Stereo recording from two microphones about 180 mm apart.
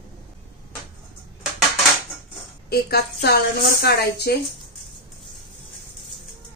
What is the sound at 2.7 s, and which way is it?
A woman's voice, 60° left (ahead or behind).